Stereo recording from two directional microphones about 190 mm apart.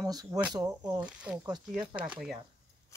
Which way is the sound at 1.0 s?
5° right (ahead or behind).